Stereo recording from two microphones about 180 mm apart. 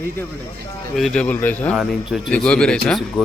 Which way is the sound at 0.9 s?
Centre (ahead or behind).